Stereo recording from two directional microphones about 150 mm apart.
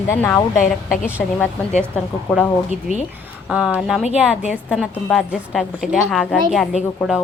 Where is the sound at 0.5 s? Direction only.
60° left (ahead or behind).